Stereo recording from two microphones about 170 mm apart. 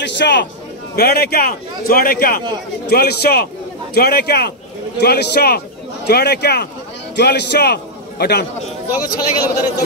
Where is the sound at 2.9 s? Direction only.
70° left (ahead or behind).